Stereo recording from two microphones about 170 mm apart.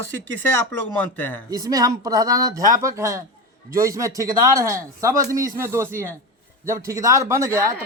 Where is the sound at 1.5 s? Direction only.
20° right (ahead or behind).